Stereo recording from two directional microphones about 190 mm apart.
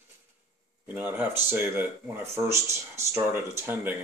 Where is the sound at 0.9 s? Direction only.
10° right (ahead or behind).